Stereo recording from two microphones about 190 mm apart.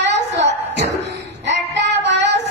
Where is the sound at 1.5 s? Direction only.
70° right (ahead or behind).